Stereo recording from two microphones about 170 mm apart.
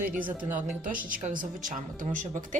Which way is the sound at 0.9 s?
50° right (ahead or behind).